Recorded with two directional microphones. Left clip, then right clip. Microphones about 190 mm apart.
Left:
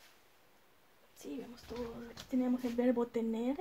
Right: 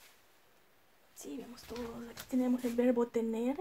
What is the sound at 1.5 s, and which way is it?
Speech, 15° right (ahead or behind).